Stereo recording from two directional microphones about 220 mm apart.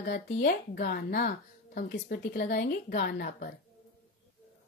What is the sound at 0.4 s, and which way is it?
Speech, 50° left (ahead or behind).